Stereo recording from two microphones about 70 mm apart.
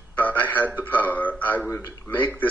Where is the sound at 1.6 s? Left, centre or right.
Left.